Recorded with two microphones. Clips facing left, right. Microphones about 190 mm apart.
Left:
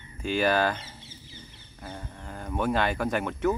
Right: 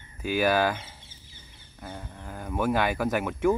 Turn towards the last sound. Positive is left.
turn(degrees=-10)  # may be behind; listen again after turning